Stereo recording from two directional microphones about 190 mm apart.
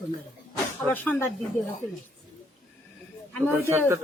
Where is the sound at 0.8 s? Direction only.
10° left (ahead or behind).